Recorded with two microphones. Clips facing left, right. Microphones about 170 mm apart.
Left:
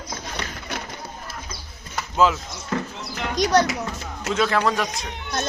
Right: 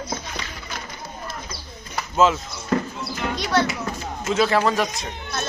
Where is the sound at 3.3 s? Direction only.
40° left (ahead or behind).